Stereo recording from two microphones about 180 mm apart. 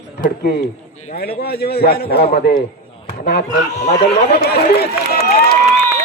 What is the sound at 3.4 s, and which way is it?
Speech, 40° left (ahead or behind).